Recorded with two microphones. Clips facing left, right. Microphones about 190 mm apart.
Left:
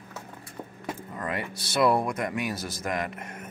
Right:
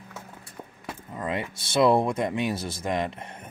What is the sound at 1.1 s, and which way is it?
Speech, 20° right (ahead or behind).